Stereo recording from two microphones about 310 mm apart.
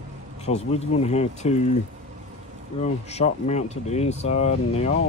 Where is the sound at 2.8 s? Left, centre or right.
Left.